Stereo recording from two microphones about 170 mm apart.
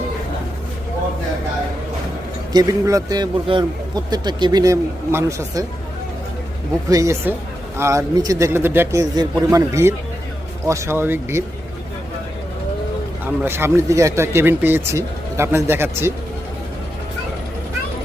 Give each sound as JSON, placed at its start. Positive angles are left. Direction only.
{"t": 2.5, "sound": "speech", "side_deg": -20}
{"t": 6.9, "sound": "speech", "side_deg": -15}
{"t": 13.2, "sound": "speech", "side_deg": -15}